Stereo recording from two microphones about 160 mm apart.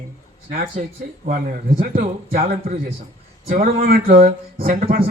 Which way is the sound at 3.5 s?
65° right (ahead or behind).